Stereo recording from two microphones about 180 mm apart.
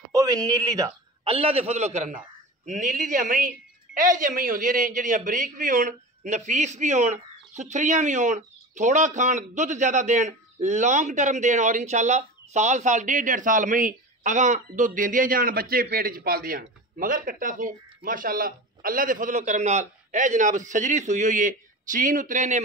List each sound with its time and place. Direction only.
0.1 s a man's voice: 20° right (ahead or behind)
1.3 s a man's voice: 30° right (ahead or behind)